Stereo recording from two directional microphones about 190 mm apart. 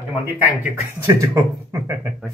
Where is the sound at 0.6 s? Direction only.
15° right (ahead or behind).